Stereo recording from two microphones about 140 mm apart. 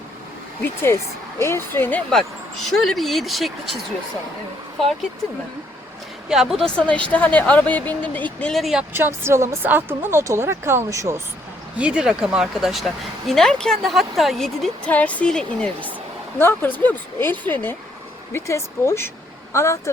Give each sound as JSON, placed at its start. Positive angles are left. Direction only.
{"t": 0.6, "sound": "a woman's voice", "side_deg": 15}
{"t": 6.2, "sound": "speech", "side_deg": -5}
{"t": 6.7, "sound": "a woman's voice", "side_deg": 10}
{"t": 8.9, "sound": "speech", "side_deg": -15}
{"t": 11.8, "sound": "a woman's voice", "side_deg": -5}